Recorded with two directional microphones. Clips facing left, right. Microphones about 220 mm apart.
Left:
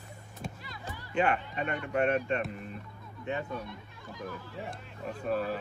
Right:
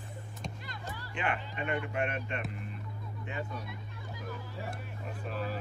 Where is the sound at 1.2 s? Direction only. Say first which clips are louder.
Left 7 dB; 40° left (ahead or behind).